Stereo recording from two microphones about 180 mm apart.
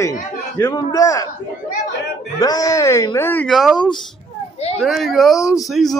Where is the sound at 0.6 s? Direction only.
20° left (ahead or behind).